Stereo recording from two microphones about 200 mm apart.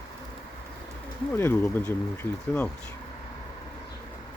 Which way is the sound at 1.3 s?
10° left (ahead or behind).